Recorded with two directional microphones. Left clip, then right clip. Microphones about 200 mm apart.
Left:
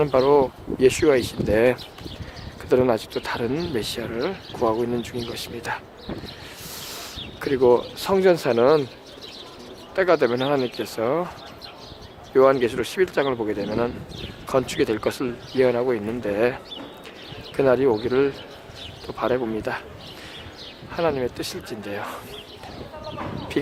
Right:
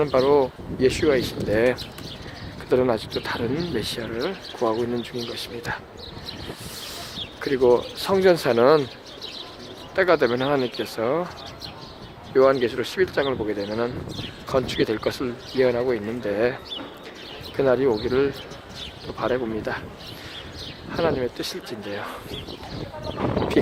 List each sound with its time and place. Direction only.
0.0 s speech: 15° left (ahead or behind)
7.4 s speech: 15° left (ahead or behind)
9.9 s speech: 10° left (ahead or behind)
12.3 s speech: 15° left (ahead or behind)
17.6 s speech: 15° left (ahead or behind)
20.9 s speech: 10° left (ahead or behind)